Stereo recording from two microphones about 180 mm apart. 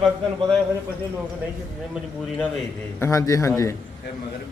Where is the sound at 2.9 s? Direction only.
15° left (ahead or behind).